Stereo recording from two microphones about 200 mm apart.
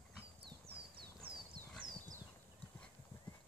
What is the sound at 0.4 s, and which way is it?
Clip-clop, 55° right (ahead or behind).